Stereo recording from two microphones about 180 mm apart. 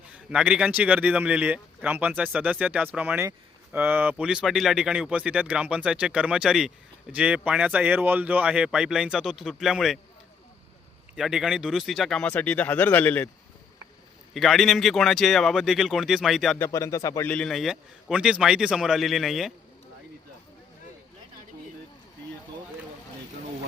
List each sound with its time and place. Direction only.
0.1 s speech: 5° right (ahead or behind)
11.2 s speech: 5° right (ahead or behind)
14.3 s a man's voice: centre (ahead or behind)
16.6 s speech: 15° left (ahead or behind)
17.3 s a man's voice: centre (ahead or behind)